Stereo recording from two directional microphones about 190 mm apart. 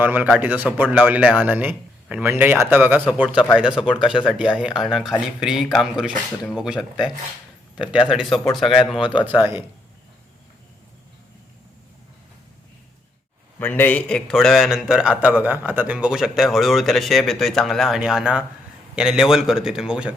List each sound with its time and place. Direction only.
0.0 s a man's voice: 10° right (ahead or behind)
13.6 s a man's voice: 10° left (ahead or behind)